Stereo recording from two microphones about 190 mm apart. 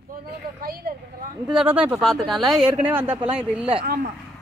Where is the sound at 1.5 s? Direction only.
5° right (ahead or behind).